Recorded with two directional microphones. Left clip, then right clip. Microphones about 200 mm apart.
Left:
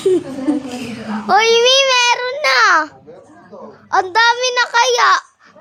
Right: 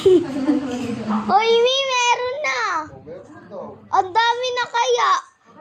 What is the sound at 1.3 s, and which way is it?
Babbling, 35° left (ahead or behind).